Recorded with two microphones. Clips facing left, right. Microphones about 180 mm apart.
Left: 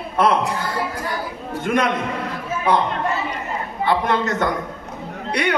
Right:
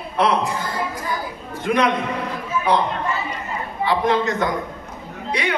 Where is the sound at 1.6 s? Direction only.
50° left (ahead or behind).